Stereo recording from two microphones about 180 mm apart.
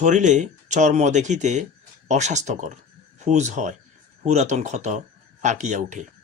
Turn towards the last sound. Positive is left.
turn(degrees=-45)  # may be behind; listen again after turning